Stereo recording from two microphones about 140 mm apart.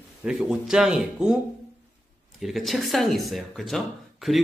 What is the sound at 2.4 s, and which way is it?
Speech, centre (ahead or behind).